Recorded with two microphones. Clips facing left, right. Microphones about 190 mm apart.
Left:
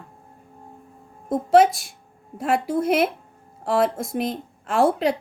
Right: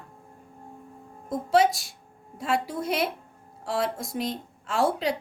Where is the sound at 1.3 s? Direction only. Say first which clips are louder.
Left 6 dB; 55° left (ahead or behind).